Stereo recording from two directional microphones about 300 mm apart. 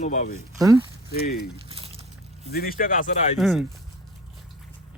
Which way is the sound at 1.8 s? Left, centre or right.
Centre.